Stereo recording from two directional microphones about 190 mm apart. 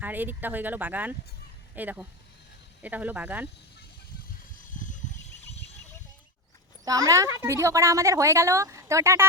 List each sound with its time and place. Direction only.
0.0 s a woman's voice: 10° right (ahead or behind)
6.8 s a woman's voice: 20° right (ahead or behind)